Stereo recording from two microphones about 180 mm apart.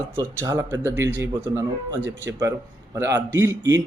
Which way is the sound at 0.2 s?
20° right (ahead or behind).